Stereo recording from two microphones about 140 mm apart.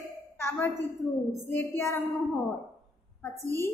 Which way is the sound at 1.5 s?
15° left (ahead or behind).